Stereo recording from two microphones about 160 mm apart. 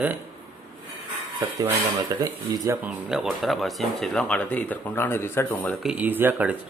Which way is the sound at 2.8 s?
5° right (ahead or behind).